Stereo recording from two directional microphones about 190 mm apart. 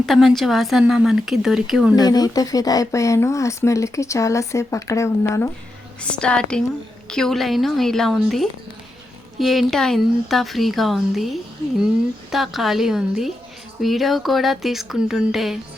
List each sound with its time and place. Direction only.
0.0 s speech: centre (ahead or behind)
2.0 s speech: 20° left (ahead or behind); by 15.5 s centre (ahead or behind)